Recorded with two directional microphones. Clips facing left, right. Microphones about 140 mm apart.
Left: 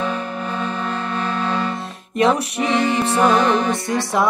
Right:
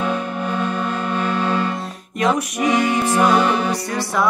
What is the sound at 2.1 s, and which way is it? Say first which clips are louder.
Music: left 2 dB; 30° left (ahead or behind).